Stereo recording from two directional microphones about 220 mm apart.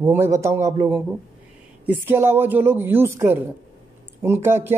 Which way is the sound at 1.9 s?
10° right (ahead or behind).